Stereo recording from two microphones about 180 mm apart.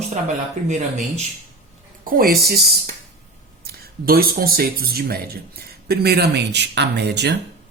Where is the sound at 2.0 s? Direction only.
55° right (ahead or behind).